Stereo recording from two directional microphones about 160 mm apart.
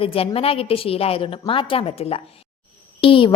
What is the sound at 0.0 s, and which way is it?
A woman's voice, 35° left (ahead or behind).